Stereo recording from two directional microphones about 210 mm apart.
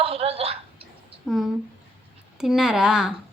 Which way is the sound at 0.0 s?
30° right (ahead or behind).